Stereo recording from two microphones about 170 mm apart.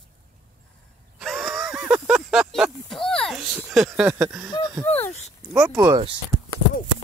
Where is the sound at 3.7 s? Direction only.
5° right (ahead or behind).